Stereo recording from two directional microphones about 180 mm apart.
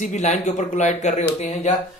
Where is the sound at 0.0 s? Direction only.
40° left (ahead or behind).